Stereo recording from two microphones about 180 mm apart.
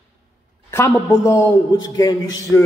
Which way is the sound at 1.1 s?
15° left (ahead or behind).